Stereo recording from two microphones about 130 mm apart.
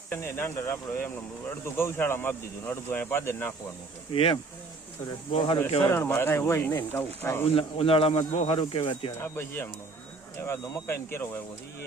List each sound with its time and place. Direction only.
0.1 s speech: 15° left (ahead or behind)
4.1 s speech: 45° left (ahead or behind)
5.8 s speech: 20° left (ahead or behind)
7.4 s speech: 45° left (ahead or behind)
9.2 s speech: 20° left (ahead or behind)